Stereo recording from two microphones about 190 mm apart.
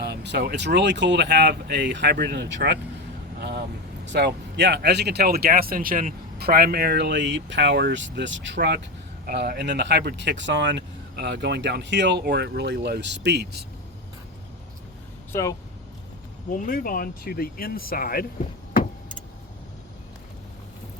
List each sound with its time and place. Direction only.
0.0 s speech: 65° right (ahead or behind)
4.0 s speech: 65° right (ahead or behind)
9.2 s speech: 55° right (ahead or behind)
15.3 s speech: 15° left (ahead or behind)
16.5 s speech: 45° left (ahead or behind)